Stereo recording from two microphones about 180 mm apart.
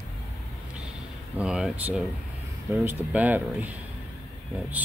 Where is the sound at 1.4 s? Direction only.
5° right (ahead or behind).